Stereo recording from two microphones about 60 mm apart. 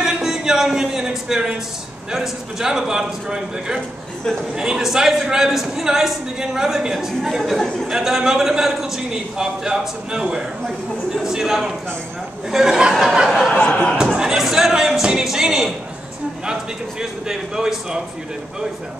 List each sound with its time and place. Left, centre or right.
0.0 s a man's voice: centre
13.5 s speech: centre
13.9 s a sound: centre
17.0 s a man's voice: centre